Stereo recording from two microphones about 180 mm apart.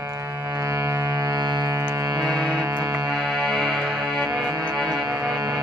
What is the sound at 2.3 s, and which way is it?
Music, centre (ahead or behind).